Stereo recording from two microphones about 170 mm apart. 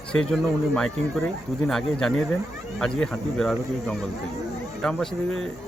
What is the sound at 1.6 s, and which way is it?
Speech, 5° left (ahead or behind).